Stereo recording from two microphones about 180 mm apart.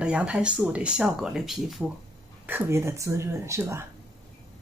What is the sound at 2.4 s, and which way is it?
Speech, 15° right (ahead or behind).